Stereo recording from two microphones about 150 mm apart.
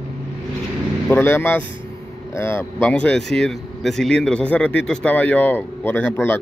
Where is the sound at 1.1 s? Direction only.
15° left (ahead or behind).